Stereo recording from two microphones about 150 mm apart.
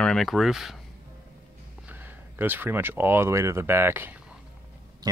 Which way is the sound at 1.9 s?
15° right (ahead or behind).